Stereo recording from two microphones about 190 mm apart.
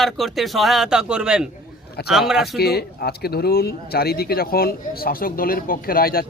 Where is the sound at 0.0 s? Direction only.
Centre (ahead or behind).